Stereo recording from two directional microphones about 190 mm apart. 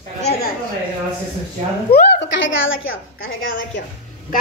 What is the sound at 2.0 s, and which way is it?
A woman's voice, 70° left (ahead or behind).